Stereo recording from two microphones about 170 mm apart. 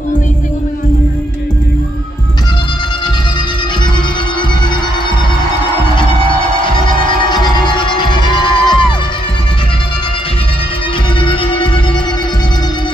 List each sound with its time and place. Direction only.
6.6 s music: 30° left (ahead or behind)
11.1 s music: 30° left (ahead or behind)